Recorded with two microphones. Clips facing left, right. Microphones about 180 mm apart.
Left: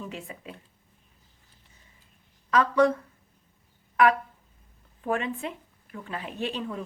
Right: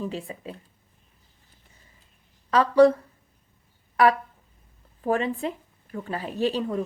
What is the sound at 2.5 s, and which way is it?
Speech, 35° right (ahead or behind).